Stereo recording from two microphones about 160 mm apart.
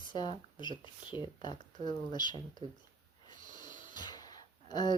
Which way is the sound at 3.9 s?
25° left (ahead or behind).